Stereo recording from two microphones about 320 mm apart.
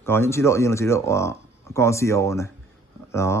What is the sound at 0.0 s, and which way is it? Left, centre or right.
A man's voice, centre.